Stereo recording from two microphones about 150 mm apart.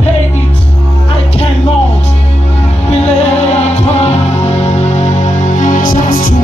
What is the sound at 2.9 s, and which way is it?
Music, 50° left (ahead or behind).